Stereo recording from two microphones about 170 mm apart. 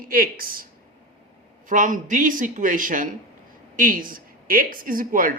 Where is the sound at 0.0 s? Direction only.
55° right (ahead or behind).